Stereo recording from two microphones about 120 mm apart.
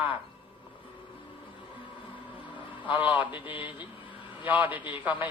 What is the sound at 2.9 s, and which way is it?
A man's voice, 15° right (ahead or behind).